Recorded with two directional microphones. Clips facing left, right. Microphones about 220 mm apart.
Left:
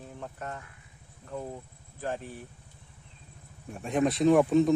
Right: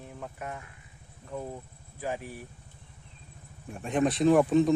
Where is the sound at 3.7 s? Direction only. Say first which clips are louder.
Even; centre (ahead or behind).